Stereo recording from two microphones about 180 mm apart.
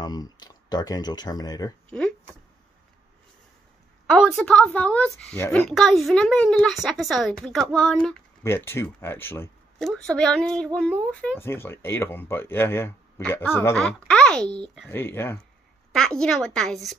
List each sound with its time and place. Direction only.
0.0 s speech: 20° left (ahead or behind)
1.9 s speech: 5° left (ahead or behind)
4.1 s speech: 5° left (ahead or behind)